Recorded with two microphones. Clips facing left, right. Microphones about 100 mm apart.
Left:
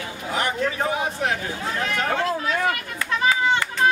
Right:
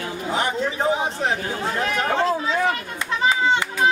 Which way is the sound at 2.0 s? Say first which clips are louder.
Right 3 dB; 25° right (ahead or behind).